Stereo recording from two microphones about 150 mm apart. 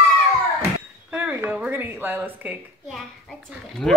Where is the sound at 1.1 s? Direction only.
10° right (ahead or behind).